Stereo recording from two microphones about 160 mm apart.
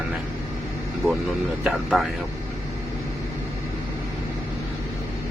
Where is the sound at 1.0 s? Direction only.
Centre (ahead or behind).